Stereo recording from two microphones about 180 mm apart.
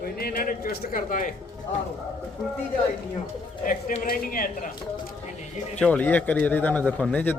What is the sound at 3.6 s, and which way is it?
Speech, 50° left (ahead or behind).